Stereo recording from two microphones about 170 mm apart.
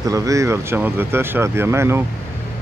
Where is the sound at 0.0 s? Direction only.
20° right (ahead or behind).